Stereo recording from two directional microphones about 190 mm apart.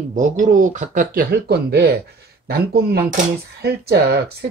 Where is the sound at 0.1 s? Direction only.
45° right (ahead or behind).